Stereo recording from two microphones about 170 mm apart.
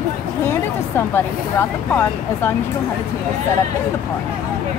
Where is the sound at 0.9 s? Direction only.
15° left (ahead or behind).